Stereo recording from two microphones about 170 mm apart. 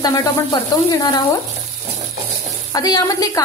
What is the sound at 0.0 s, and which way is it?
A woman's voice, 25° left (ahead or behind).